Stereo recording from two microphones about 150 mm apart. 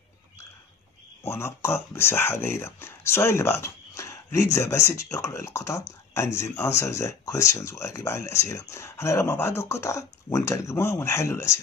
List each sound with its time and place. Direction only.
1.3 s speech: 15° left (ahead or behind)